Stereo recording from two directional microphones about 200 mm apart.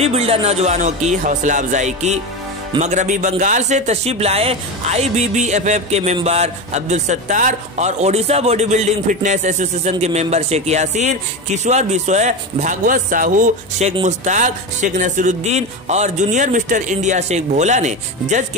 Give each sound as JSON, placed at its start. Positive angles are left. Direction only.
{"t": 0.0, "sound": "speech", "side_deg": -30}